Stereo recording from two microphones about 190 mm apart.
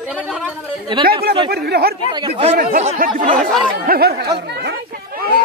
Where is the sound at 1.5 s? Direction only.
55° right (ahead or behind).